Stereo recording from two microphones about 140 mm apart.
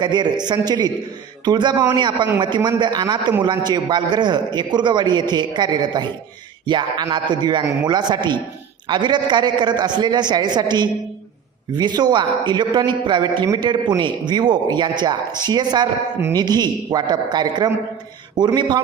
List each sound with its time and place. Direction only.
0.0 s a man's voice: 30° right (ahead or behind)